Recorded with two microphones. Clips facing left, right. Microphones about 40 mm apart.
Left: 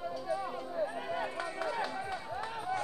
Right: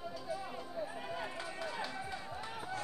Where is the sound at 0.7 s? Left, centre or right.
Left.